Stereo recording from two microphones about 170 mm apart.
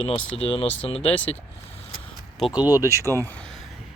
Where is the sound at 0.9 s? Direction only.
35° left (ahead or behind).